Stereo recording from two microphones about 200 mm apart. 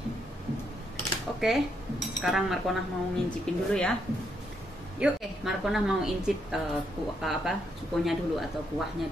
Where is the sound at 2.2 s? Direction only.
Centre (ahead or behind).